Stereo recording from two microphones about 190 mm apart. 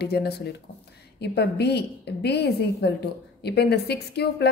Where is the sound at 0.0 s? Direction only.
60° left (ahead or behind).